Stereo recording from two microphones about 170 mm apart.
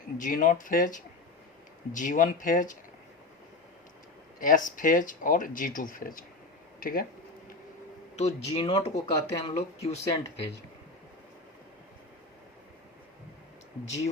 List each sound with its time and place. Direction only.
0.2 s speech: 50° left (ahead or behind)
4.4 s speech: 50° left (ahead or behind)
6.7 s a sound: 55° left (ahead or behind)
8.1 s speech: 35° left (ahead or behind)